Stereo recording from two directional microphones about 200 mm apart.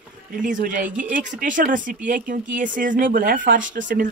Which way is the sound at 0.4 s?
40° right (ahead or behind).